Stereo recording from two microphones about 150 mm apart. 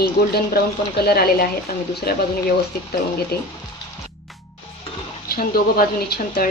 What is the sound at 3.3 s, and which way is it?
Speech, 90° left.